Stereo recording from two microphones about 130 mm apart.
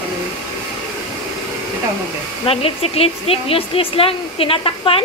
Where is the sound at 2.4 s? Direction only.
50° left (ahead or behind).